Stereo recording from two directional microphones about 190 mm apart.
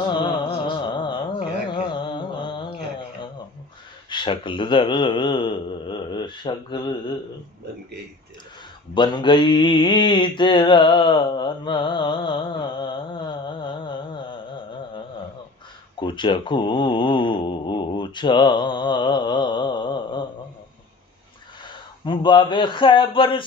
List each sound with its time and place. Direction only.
0.1 s carnatic music: 25° left (ahead or behind)
1.7 s a sound: 25° left (ahead or behind)
4.1 s a man's voice: 25° left (ahead or behind)
8.9 s mantra: 25° left (ahead or behind)
16.0 s speech: 25° left (ahead or behind)
22.0 s a man's voice: 25° left (ahead or behind)